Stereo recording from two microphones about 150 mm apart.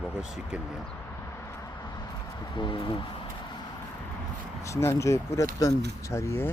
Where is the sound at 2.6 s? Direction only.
35° left (ahead or behind).